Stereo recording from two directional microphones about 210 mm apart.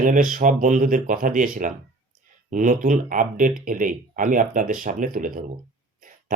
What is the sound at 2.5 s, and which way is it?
Speech, 35° right (ahead or behind).